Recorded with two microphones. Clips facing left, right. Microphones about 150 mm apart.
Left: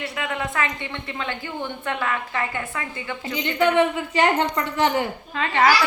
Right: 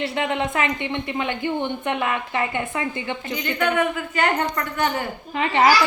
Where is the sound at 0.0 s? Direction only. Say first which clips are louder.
Right 5 dB; 25° right (ahead or behind).